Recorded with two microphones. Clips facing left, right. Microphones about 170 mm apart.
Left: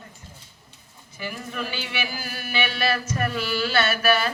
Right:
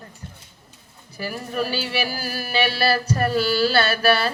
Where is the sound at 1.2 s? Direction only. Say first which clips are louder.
Right 6 dB; 40° right (ahead or behind).